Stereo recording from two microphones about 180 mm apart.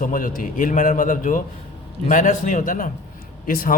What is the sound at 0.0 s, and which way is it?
A man's voice, 50° left (ahead or behind).